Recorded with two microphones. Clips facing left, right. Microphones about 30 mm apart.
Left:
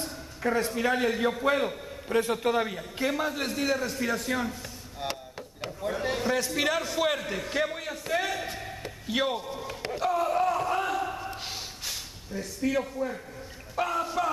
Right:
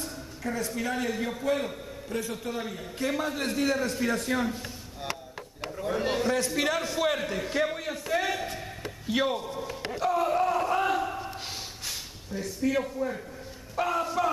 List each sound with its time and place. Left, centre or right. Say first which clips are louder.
0.0 s a man's voice: left 4 dB; left
2.1 s a man's voice: left 7 dB; left
2.5 s a man's voice: left 6 dB; left
3.1 s a man's voice: even; centre
5.6 s a sound: right 1 dB; centre
5.9 s a man's voice: right 1 dB; centre
7.2 s a sound: right 1 dB; centre
12.7 s a man's voice: even; centre